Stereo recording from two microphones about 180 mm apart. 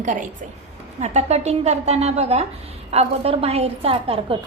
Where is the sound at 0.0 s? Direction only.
45° right (ahead or behind).